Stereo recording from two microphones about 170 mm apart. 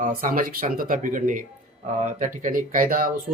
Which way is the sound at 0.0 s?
55° right (ahead or behind).